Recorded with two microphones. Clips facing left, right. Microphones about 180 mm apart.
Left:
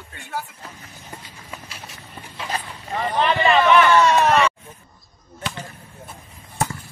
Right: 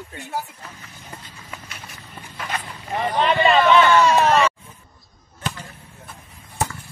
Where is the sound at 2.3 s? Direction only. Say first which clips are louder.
Left 1 dB; 25° left (ahead or behind).